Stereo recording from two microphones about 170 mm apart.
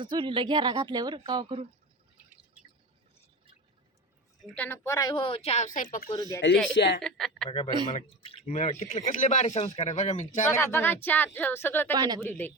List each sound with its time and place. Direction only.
0.0 s speech: 30° right (ahead or behind)
4.4 s speech: 10° left (ahead or behind)
4.9 s speech: 20° left (ahead or behind); by 6.1 s 50° left (ahead or behind)
6.4 s a woman's voice: 90° left
7.0 s speech: centre (ahead or behind)
8.2 s speech: 35° left (ahead or behind)
10.6 s speech: 15° left (ahead or behind)
11.9 s speech: 25° right (ahead or behind)
12.2 s speech: 10° left (ahead or behind)